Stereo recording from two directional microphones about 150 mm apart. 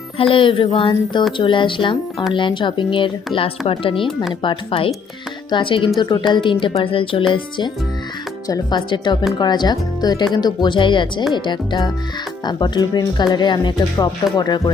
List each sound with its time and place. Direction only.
0.2 s speech: 35° left (ahead or behind)